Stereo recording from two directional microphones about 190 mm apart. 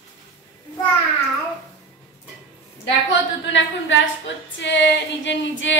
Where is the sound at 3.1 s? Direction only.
75° left (ahead or behind).